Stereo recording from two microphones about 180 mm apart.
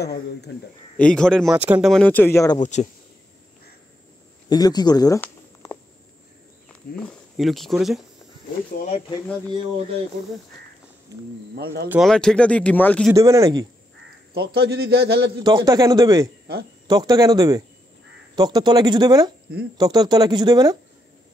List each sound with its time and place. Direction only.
0.0 s speech: 65° left (ahead or behind)
0.9 s speech: 5° left (ahead or behind)
1.5 s speech: 10° right (ahead or behind); by 2.6 s 15° left (ahead or behind)
2.6 s speech: 40° left (ahead or behind)
4.5 s speech: 20° left (ahead or behind)
6.7 s speech: 5° left (ahead or behind)
11.5 s a man's voice: 65° right (ahead or behind)
11.9 s speech: centre (ahead or behind)
13.1 s speech: 15° right (ahead or behind)
14.3 s a man's voice: 65° right (ahead or behind)
15.4 s speech: 20° right (ahead or behind)